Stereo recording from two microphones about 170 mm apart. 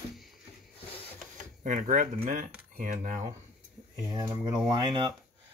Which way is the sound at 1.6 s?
50° right (ahead or behind).